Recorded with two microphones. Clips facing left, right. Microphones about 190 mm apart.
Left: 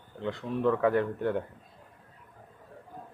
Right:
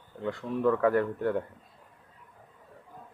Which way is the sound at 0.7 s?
25° left (ahead or behind).